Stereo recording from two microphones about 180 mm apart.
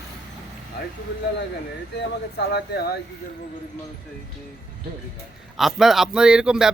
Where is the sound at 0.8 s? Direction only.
65° left (ahead or behind).